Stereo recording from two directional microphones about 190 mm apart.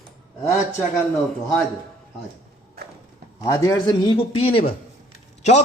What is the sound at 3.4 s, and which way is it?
A man's voice, 20° left (ahead or behind).